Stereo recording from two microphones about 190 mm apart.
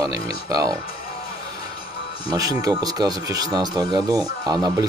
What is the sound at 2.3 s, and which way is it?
Speech, 20° right (ahead or behind).